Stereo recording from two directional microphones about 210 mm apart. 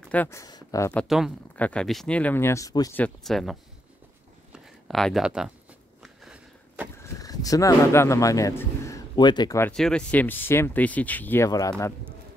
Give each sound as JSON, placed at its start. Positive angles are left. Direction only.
{"t": 0.0, "sound": "speech", "side_deg": 5}
{"t": 1.0, "sound": "speech", "side_deg": 0}
{"t": 4.5, "sound": "a sound", "side_deg": 0}
{"t": 7.0, "sound": "speech", "side_deg": 15}
{"t": 9.7, "sound": "speech", "side_deg": 5}